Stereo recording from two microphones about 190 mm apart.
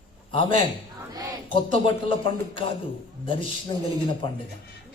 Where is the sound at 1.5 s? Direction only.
25° left (ahead or behind).